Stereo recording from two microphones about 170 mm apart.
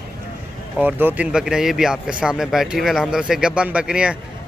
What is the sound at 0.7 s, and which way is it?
Speech, 10° right (ahead or behind).